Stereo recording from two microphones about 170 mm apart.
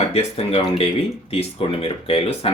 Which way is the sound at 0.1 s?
35° left (ahead or behind).